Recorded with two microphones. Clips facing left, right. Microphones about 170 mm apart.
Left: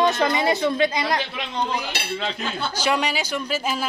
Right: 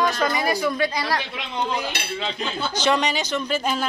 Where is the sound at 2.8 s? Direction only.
10° left (ahead or behind).